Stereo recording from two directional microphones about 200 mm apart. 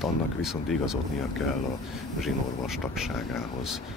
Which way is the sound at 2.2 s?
Centre (ahead or behind).